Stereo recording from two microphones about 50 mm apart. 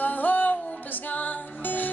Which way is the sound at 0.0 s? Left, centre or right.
Left.